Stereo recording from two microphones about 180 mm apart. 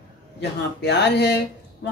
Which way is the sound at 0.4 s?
70° left (ahead or behind).